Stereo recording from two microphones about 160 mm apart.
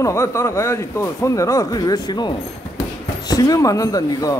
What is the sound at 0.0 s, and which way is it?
Speech, 15° left (ahead or behind).